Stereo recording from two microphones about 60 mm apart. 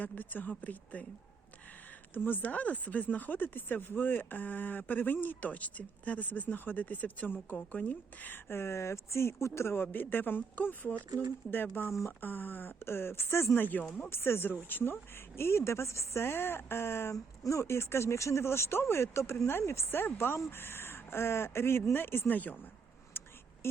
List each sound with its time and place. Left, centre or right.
0.0 s speech: left
2.1 s speech: left
8.4 s a woman's voice: left
11.1 s speech: right
11.5 s a woman's voice: left
13.6 s speech: left
14.1 s a woman's voice: left
16.2 s speech: left
17.4 s a woman's voice: left
23.1 s a sound: left